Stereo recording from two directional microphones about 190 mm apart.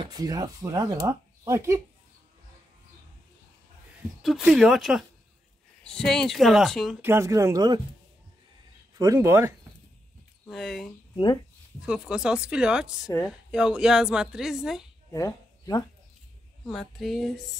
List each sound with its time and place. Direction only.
0.0 s speech: 20° right (ahead or behind)
4.4 s a woman's voice: 5° right (ahead or behind)
7.0 s speech: 15° right (ahead or behind)
8.9 s speech: 15° right (ahead or behind)
10.4 s a woman's voice: centre (ahead or behind)
15.1 s speech: 15° left (ahead or behind)
16.6 s a woman's voice: centre (ahead or behind)